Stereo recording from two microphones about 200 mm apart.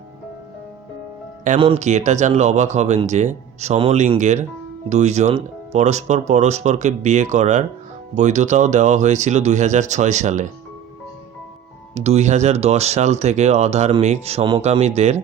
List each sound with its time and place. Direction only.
1.5 s speech: 30° right (ahead or behind)
11.9 s speech: 35° right (ahead or behind)